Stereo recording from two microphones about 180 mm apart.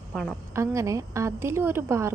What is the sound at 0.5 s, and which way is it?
A woman's voice, 15° right (ahead or behind).